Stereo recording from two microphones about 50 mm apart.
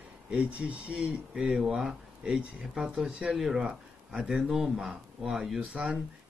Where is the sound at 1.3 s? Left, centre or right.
Centre.